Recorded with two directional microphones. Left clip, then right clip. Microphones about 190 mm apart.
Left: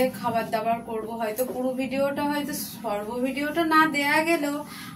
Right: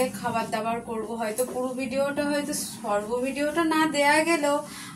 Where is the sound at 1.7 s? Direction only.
10° right (ahead or behind).